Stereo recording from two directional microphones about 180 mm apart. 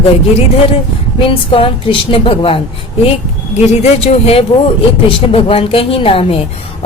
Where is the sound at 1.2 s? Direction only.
30° left (ahead or behind).